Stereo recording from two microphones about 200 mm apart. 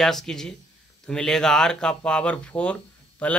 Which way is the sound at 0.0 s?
Centre (ahead or behind).